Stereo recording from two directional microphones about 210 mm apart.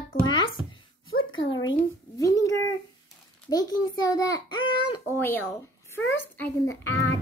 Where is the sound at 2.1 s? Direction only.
15° left (ahead or behind).